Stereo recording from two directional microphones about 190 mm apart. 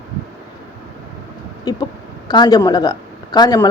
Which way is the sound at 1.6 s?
20° left (ahead or behind).